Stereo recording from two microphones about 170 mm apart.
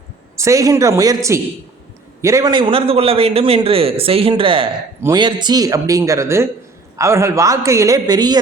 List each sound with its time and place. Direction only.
0.3 s a man's voice: 20° right (ahead or behind)